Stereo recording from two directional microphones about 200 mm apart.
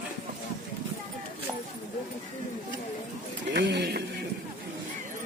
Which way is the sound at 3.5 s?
60° right (ahead or behind).